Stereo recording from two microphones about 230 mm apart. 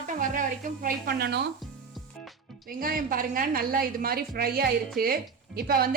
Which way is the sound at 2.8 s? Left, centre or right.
Right.